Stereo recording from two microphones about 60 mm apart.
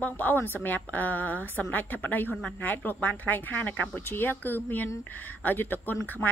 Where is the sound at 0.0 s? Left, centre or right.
Left.